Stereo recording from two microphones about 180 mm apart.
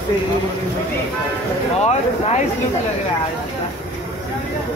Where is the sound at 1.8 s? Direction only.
35° left (ahead or behind).